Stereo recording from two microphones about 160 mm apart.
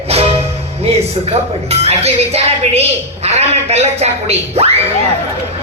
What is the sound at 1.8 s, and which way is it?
Speech, 40° right (ahead or behind).